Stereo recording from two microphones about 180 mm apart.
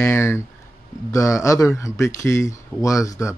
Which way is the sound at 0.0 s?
15° left (ahead or behind).